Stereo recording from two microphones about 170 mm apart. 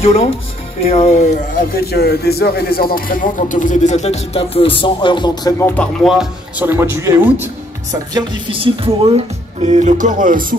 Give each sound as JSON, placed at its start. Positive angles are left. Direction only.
{"t": 0.0, "sound": "speech", "side_deg": 35}
{"t": 1.9, "sound": "speech", "side_deg": 70}
{"t": 5.7, "sound": "speech", "side_deg": 5}
{"t": 6.6, "sound": "speech", "side_deg": -15}
{"t": 8.1, "sound": "speech", "side_deg": -25}